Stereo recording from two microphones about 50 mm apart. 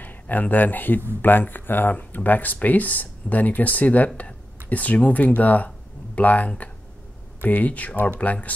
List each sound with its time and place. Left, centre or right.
0.0 s speech: left